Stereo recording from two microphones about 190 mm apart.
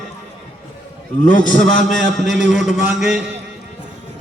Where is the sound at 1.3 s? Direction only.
45° left (ahead or behind).